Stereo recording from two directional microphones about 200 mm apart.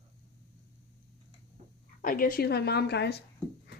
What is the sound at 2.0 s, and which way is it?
A woman's voice, 45° left (ahead or behind).